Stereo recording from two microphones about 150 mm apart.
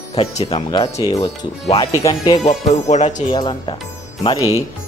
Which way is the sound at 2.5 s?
50° left (ahead or behind).